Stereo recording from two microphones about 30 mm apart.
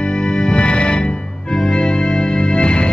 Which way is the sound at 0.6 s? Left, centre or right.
Left.